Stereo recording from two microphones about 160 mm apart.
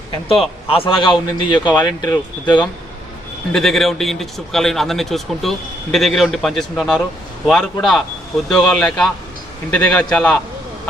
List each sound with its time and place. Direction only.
0.3 s a man's voice: 35° left (ahead or behind)
3.5 s a man's voice: centre (ahead or behind)